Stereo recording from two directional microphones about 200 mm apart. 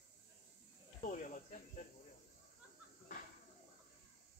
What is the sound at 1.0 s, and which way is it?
Cricket, 40° left (ahead or behind).